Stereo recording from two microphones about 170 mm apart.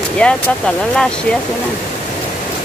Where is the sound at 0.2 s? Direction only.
5° left (ahead or behind).